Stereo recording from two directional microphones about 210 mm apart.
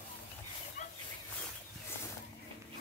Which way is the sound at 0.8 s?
35° left (ahead or behind).